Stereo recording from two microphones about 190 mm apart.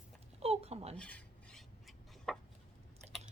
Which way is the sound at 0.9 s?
5° left (ahead or behind).